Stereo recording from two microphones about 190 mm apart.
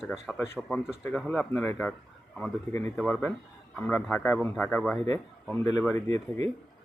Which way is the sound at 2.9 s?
5° left (ahead or behind).